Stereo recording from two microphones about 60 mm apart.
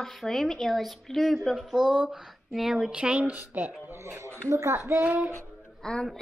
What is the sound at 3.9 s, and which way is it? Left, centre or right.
Speech, right.